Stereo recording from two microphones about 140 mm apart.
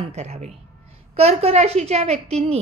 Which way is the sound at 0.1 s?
50° right (ahead or behind).